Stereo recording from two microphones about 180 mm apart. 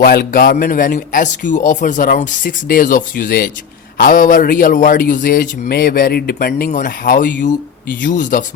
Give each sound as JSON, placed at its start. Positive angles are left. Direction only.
{"t": 0.0, "sound": "a man's voice", "side_deg": 55}